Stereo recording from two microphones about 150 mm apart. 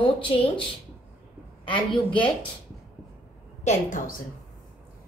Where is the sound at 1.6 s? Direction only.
35° left (ahead or behind).